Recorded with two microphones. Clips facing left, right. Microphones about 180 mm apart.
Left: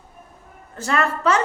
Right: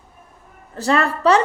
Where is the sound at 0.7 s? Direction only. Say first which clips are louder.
Right 3 dB; 35° right (ahead or behind).